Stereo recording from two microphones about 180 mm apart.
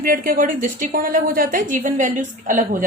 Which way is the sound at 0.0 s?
50° right (ahead or behind).